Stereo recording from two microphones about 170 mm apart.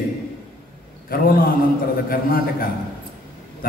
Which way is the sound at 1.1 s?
60° left (ahead or behind).